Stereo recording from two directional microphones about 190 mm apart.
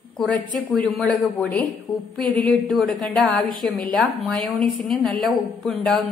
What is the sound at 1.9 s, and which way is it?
Speech, 25° left (ahead or behind).